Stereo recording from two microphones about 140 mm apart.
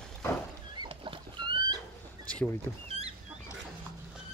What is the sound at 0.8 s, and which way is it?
Rowboat, 35° right (ahead or behind).